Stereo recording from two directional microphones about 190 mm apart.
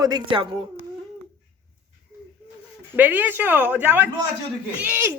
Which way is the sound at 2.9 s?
10° right (ahead or behind).